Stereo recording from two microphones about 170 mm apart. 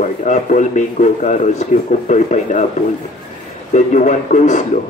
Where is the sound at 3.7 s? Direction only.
45° left (ahead or behind).